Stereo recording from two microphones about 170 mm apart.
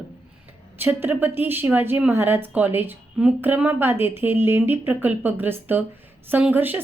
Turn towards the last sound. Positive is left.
turn(degrees=-10)  # may be behind; listen again after turning